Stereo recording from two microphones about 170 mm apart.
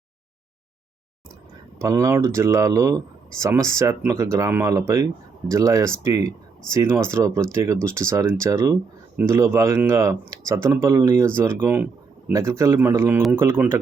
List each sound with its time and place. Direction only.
1.8 s speech: 20° right (ahead or behind)